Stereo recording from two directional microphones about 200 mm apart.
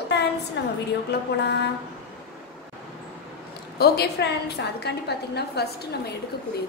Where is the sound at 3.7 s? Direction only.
55° left (ahead or behind).